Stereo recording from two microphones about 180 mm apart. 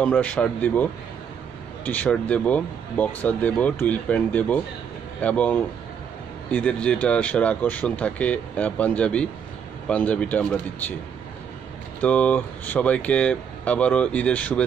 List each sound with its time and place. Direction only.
0.0 s speech: 10° left (ahead or behind)
1.9 s speech: 10° left (ahead or behind)
12.0 s speech: 5° left (ahead or behind)